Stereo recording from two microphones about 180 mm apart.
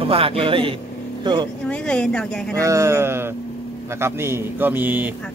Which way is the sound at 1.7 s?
5° left (ahead or behind).